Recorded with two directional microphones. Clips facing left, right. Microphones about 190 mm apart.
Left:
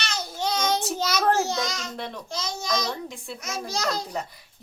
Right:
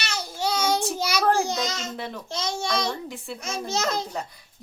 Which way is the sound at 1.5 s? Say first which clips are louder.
Right 1 dB; 20° right (ahead or behind).